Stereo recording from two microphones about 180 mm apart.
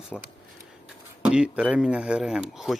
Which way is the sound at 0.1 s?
Centre (ahead or behind).